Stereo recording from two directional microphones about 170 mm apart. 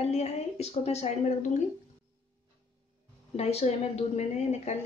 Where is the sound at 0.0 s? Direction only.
40° left (ahead or behind).